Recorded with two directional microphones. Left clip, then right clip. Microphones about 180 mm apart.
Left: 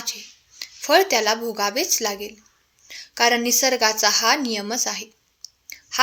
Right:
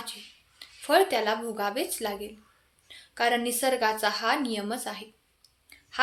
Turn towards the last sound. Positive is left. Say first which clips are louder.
# left 13 dB
turn(degrees=35)  # may be behind; listen again after turning